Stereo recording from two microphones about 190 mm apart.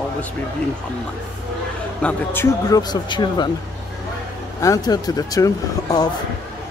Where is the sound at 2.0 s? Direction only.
10° left (ahead or behind).